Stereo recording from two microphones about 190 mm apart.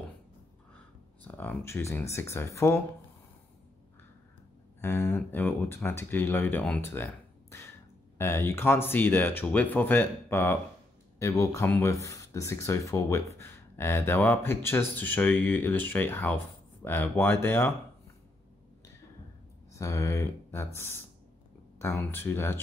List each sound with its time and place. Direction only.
1.2 s speech: 10° left (ahead or behind)
4.8 s speech: 15° left (ahead or behind)
19.7 s speech: 15° left (ahead or behind)